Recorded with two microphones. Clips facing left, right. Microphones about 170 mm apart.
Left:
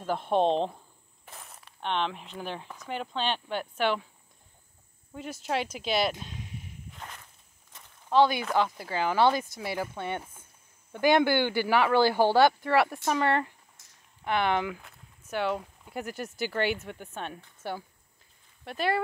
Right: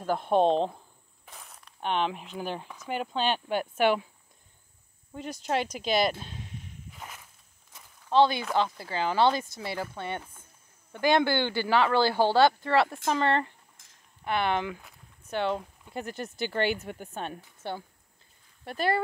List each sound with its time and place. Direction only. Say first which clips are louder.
0.0 s speech: right 2 dB; centre (ahead or behind)
1.2 s a sound: left 1 dB; centre (ahead or behind)
1.8 s speech: right 2 dB; 5° right (ahead or behind)
5.1 s speech: right 2 dB; 5° left (ahead or behind)
6.9 s walk: even; 5° right (ahead or behind)
8.1 s speech: even; 5° left (ahead or behind)
17.3 s speech: right 2 dB; 5° right (ahead or behind)
18.7 s speech: right 1 dB; 40° right (ahead or behind)